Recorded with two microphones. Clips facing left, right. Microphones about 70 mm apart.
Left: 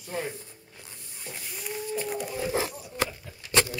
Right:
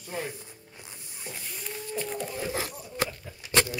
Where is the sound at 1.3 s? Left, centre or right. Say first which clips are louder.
Left 2 dB; centre.